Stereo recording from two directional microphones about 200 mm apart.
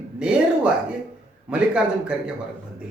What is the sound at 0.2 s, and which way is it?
Speech, 5° right (ahead or behind).